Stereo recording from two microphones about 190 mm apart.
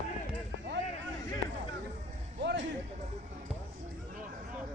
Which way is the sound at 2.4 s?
75° right (ahead or behind).